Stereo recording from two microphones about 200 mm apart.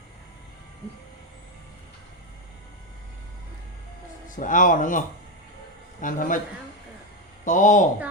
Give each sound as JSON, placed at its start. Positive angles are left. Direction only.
{"t": 4.4, "sound": "speech", "side_deg": 40}
{"t": 7.4, "sound": "speech", "side_deg": 40}